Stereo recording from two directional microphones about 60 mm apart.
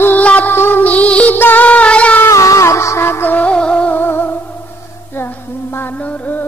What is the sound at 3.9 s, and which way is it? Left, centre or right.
Music, left.